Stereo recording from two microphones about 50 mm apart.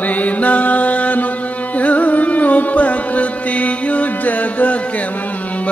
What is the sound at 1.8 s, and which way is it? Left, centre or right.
Music, left.